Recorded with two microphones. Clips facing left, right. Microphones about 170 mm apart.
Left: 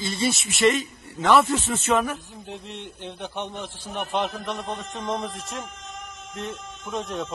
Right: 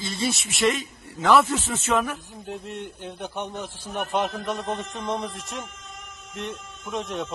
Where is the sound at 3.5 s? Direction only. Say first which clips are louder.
Right 1 dB; 10° right (ahead or behind).